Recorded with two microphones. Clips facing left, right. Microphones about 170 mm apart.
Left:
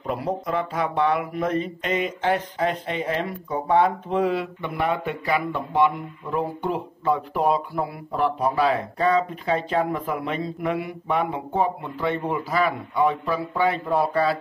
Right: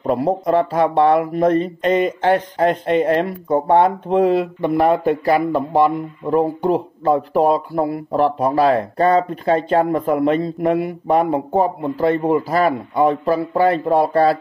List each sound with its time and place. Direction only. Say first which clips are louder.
0.0 s speech: right 9 dB; 35° right (ahead or behind)
2.2 s speech: right 6 dB; 65° right (ahead or behind)
4.1 s speech: right 7 dB; 35° right (ahead or behind)